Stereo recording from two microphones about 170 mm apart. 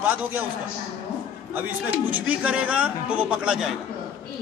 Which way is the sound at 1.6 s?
10° right (ahead or behind).